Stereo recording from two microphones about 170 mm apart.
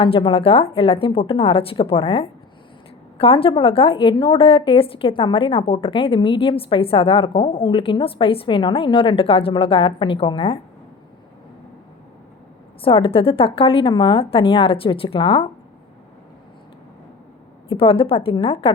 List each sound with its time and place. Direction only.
0.0 s a woman's voice: 30° left (ahead or behind)
12.8 s a woman's voice: 30° left (ahead or behind)
17.7 s a woman's voice: 30° left (ahead or behind)